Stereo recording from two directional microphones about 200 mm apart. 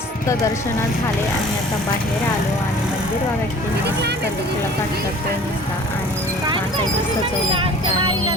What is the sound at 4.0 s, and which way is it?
Speech, 55° right (ahead or behind).